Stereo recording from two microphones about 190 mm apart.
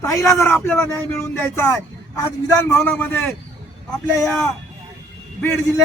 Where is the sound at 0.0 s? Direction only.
15° left (ahead or behind).